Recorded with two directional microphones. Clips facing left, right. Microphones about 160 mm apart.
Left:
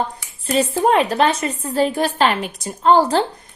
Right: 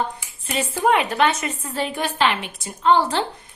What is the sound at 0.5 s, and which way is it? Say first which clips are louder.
A woman's voice: left 4 dB; 35° left (ahead or behind).